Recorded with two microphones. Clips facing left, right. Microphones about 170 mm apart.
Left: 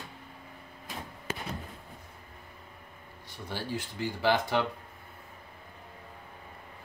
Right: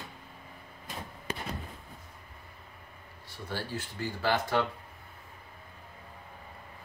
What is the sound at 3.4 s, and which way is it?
Speech, 15° left (ahead or behind).